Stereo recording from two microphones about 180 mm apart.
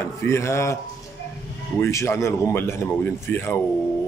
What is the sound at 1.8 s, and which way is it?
A man's voice, 15° left (ahead or behind).